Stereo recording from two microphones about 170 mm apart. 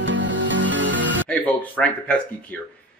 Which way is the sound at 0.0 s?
90° right.